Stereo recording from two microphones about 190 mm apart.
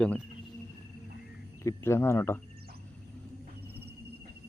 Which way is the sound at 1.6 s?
15° left (ahead or behind).